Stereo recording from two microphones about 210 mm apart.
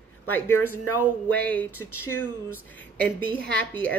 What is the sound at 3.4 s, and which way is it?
Speech, 5° left (ahead or behind).